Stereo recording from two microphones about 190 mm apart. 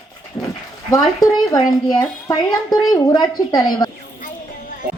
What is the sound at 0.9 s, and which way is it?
A woman's voice, 20° left (ahead or behind).